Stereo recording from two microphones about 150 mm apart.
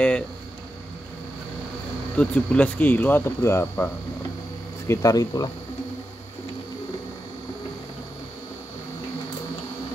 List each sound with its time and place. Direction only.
2.1 s speech: 10° left (ahead or behind); by 5.5 s 25° left (ahead or behind)